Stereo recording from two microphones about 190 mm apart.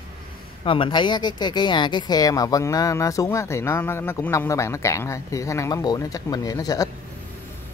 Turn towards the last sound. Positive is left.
turn(degrees=20)  # may be behind; listen again after turning